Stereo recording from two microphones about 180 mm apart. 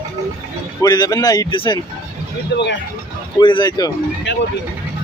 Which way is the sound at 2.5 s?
70° left (ahead or behind).